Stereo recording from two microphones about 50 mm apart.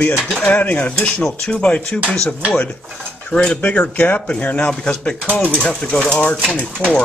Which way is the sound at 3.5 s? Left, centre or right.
Left.